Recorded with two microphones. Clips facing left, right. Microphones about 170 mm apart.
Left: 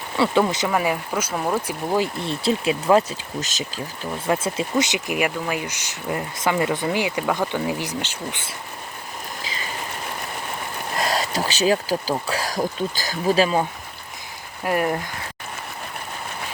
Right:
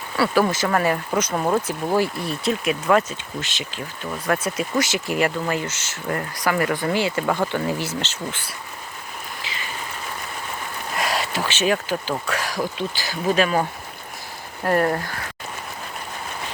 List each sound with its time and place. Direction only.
0.2 s speech: 25° left (ahead or behind)
0.7 s speech: 10° left (ahead or behind)
1.3 s speech: 10° right (ahead or behind)
1.6 s speech: 10° left (ahead or behind)
2.2 s speech: 30° left (ahead or behind)
4.1 s speech: 25° left (ahead or behind)
9.4 s stream: 40° left (ahead or behind)
10.9 s a sound: 40° left (ahead or behind)
12.2 s speech: 35° left (ahead or behind)
14.6 s speech: 10° left (ahead or behind)